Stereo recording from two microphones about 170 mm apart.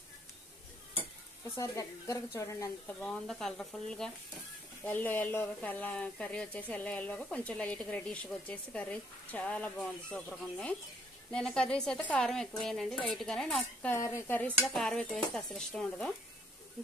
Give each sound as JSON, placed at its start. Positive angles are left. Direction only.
{"t": 1.6, "sound": "speech", "side_deg": 20}
{"t": 2.9, "sound": "speech", "side_deg": 5}
{"t": 13.9, "sound": "speech", "side_deg": 15}